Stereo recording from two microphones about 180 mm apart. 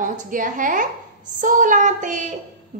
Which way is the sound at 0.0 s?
45° right (ahead or behind).